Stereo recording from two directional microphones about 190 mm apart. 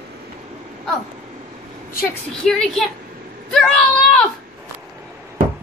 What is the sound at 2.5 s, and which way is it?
Speech, 5° left (ahead or behind).